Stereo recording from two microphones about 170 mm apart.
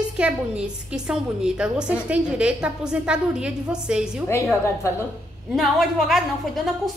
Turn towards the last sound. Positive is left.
turn(degrees=0)  # may be behind; listen again after turning